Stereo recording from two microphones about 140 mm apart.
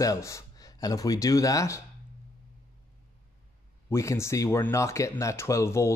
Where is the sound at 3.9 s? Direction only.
20° left (ahead or behind).